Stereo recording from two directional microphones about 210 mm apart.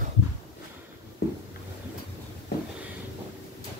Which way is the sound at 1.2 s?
50° left (ahead or behind).